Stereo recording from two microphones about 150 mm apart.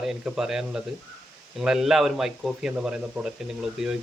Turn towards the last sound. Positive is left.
turn(degrees=-5)  # may be behind; listen again after turning